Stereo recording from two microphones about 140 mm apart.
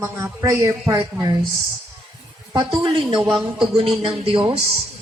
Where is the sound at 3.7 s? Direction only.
45° right (ahead or behind).